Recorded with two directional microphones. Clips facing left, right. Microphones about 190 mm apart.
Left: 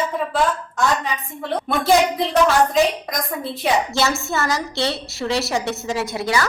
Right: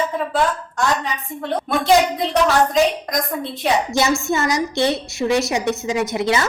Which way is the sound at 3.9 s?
15° right (ahead or behind).